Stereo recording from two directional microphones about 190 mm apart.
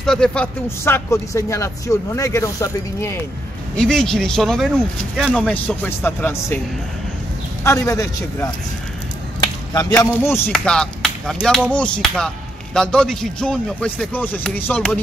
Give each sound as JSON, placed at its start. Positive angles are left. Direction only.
{"t": 0.0, "sound": "speech", "side_deg": 5}
{"t": 3.7, "sound": "speech", "side_deg": 5}
{"t": 7.6, "sound": "speech", "side_deg": 15}
{"t": 9.9, "sound": "speech", "side_deg": 10}